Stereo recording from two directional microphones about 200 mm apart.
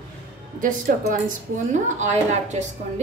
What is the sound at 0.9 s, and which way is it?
A woman's voice, 45° right (ahead or behind).